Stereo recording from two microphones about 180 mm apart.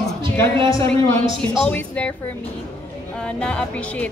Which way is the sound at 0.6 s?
15° left (ahead or behind).